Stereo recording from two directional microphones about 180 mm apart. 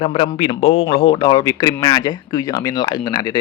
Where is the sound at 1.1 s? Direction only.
20° left (ahead or behind).